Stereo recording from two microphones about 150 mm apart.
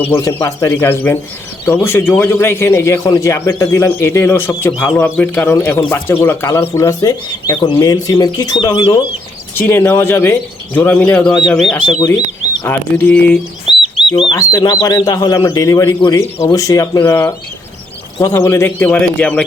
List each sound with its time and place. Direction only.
0.0 s a man's voice: 20° left (ahead or behind); by 11.8 s centre (ahead or behind)
11.9 s speech: 25° left (ahead or behind)
12.6 s a man's voice: 15° left (ahead or behind)
14.3 s a man's voice: 25° left (ahead or behind); by 19.5 s 10° left (ahead or behind)